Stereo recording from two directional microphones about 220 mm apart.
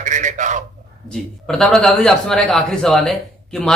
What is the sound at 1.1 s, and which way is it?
A man's voice, 5° left (ahead or behind).